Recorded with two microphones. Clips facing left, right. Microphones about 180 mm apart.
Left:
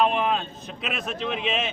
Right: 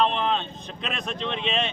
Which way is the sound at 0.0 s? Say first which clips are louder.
Left 1 dB; 10° left (ahead or behind).